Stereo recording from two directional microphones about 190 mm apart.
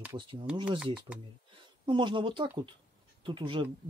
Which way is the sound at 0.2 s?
25° right (ahead or behind).